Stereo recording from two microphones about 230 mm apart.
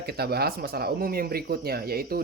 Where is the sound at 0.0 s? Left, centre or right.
Right.